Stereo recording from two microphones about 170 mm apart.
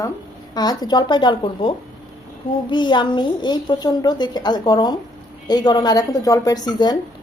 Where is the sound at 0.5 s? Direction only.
25° left (ahead or behind).